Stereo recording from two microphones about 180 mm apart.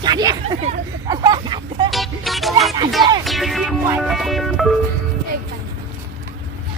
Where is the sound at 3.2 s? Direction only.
Centre (ahead or behind).